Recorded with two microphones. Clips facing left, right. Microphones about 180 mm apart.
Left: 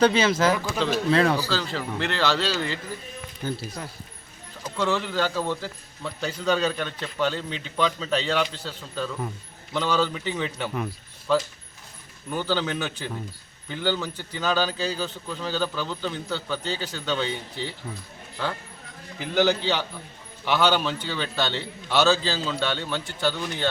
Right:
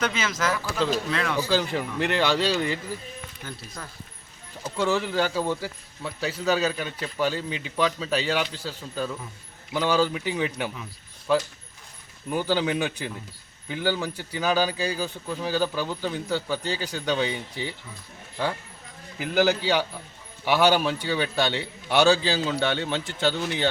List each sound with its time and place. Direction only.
0.0 s speech: 30° left (ahead or behind)
0.5 s speech: 15° left (ahead or behind)
1.1 s speech: 35° left (ahead or behind)
1.5 s speech: 15° right (ahead or behind)
3.4 s speech: 30° left (ahead or behind)
4.6 s speech: 10° right (ahead or behind)
12.3 s speech: 10° right (ahead or behind)
19.2 s speech: 10° right (ahead or behind)